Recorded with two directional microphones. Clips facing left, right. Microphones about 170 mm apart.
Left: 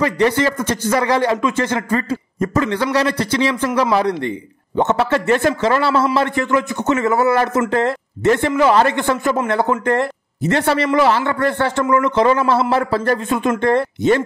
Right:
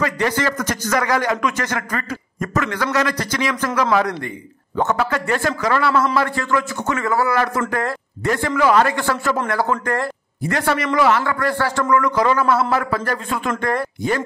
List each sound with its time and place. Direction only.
0.4 s speech: 25° left (ahead or behind)